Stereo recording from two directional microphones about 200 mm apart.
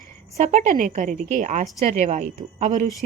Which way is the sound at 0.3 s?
35° right (ahead or behind).